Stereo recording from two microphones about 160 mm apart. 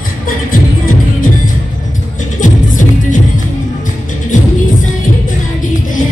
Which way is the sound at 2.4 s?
55° left (ahead or behind).